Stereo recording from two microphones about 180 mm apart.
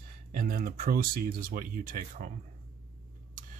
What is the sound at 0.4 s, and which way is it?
Speech, 50° right (ahead or behind).